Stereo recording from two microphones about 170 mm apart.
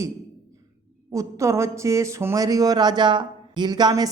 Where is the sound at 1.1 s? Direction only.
20° right (ahead or behind).